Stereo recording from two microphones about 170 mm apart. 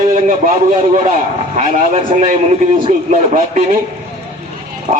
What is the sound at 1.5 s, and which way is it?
A man's voice, 45° right (ahead or behind).